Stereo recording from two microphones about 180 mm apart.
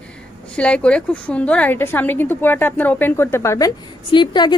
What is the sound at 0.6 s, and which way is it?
A woman's voice, 5° left (ahead or behind).